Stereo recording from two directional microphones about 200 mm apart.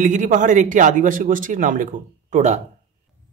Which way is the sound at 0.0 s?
40° right (ahead or behind).